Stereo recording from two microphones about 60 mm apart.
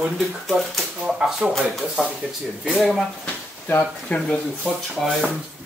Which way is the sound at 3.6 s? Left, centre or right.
Left.